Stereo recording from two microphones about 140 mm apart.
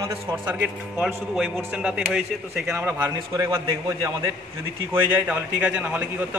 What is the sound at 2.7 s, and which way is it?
A man's voice, 20° right (ahead or behind).